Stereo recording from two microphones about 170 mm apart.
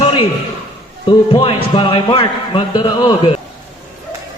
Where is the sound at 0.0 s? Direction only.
30° left (ahead or behind).